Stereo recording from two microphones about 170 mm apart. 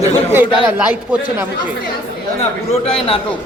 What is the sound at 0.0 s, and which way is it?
Speech, 15° right (ahead or behind).